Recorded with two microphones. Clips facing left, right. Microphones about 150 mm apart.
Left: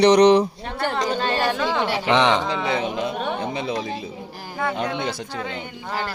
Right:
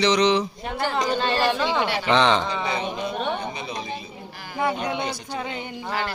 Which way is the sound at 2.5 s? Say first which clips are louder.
Left 3 dB; centre (ahead or behind).